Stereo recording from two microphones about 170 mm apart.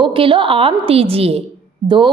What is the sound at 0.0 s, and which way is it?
A woman's voice, 30° right (ahead or behind).